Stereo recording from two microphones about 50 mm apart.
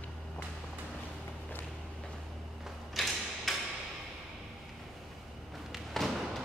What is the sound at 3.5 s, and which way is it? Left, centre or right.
Hammer, centre.